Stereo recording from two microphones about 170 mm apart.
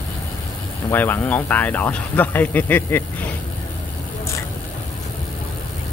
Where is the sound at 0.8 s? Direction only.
10° left (ahead or behind).